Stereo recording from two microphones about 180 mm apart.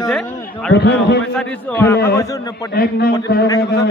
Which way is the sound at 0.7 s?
65° left (ahead or behind).